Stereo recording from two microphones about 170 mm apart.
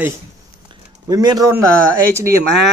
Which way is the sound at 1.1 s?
20° right (ahead or behind).